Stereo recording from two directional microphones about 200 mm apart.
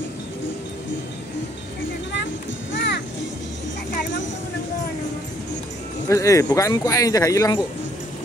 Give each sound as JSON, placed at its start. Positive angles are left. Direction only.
{"t": 2.7, "sound": "music", "side_deg": 60}
{"t": 6.0, "sound": "speech", "side_deg": 15}